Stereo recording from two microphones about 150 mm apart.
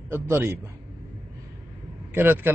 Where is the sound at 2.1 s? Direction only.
15° right (ahead or behind).